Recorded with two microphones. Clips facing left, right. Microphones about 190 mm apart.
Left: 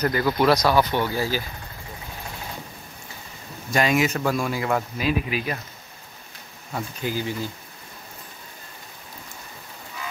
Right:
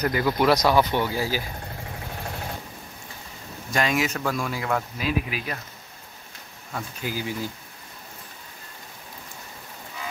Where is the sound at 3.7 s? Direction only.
5° left (ahead or behind).